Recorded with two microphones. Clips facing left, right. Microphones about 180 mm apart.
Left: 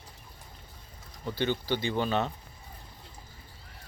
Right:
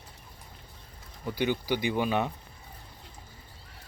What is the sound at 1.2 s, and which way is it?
Speech, 10° right (ahead or behind).